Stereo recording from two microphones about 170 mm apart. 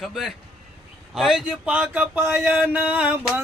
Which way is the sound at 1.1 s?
Centre (ahead or behind).